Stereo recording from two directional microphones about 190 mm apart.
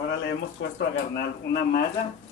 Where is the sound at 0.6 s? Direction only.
60° left (ahead or behind).